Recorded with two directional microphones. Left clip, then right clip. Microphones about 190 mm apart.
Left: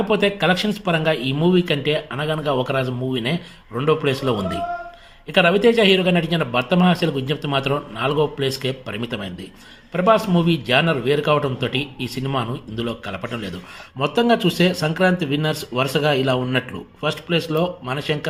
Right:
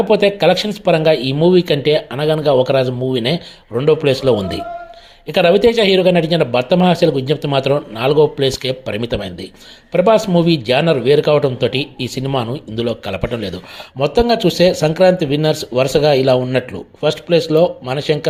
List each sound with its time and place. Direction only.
0.0 s speech: 30° right (ahead or behind)